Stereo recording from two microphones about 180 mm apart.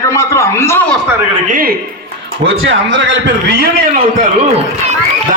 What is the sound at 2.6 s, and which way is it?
Speech, 90° right.